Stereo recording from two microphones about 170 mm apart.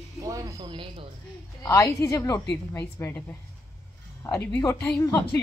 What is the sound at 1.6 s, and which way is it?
Speech, 15° left (ahead or behind).